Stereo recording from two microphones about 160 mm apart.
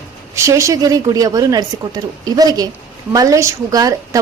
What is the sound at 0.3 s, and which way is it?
A woman's voice, 20° right (ahead or behind).